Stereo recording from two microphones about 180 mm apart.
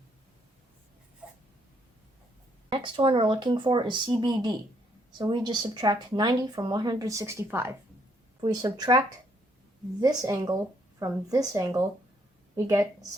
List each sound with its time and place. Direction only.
2.6 s speech: 30° right (ahead or behind)
10.0 s a woman's voice: 20° right (ahead or behind)